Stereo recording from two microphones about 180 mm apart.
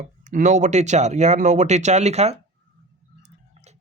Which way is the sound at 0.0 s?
40° right (ahead or behind).